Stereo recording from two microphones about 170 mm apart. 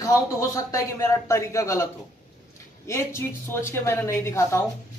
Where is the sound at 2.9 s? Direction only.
15° left (ahead or behind).